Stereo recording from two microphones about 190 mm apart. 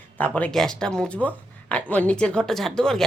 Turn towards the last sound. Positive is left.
turn(degrees=5)  # may be behind; listen again after turning